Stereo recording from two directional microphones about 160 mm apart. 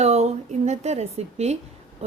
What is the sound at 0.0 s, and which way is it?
A woman's voice, 40° right (ahead or behind).